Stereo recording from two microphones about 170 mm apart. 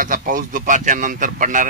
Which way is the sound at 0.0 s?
55° right (ahead or behind).